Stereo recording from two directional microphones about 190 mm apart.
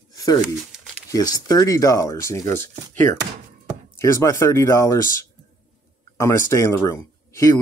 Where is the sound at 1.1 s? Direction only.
20° left (ahead or behind).